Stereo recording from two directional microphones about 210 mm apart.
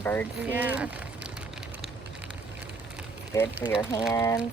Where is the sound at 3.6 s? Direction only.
10° left (ahead or behind).